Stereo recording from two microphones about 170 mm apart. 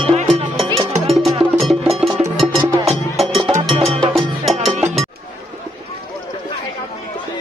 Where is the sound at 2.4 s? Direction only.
30° right (ahead or behind).